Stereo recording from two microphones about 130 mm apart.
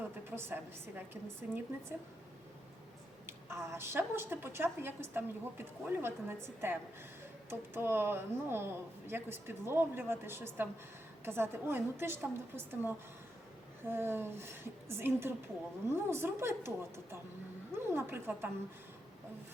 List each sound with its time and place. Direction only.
0.3 s a woman's voice: 15° right (ahead or behind)
3.2 s a woman's voice: 20° right (ahead or behind)